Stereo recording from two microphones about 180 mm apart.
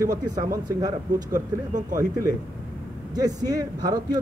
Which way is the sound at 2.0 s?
15° right (ahead or behind).